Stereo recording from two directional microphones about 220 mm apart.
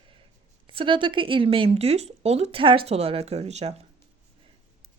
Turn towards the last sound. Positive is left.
turn(degrees=-30)  # may be behind; listen again after turning